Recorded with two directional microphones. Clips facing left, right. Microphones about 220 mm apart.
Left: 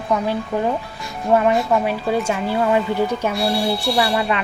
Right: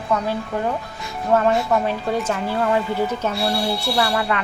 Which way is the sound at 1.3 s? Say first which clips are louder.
Left 1 dB; 10° left (ahead or behind).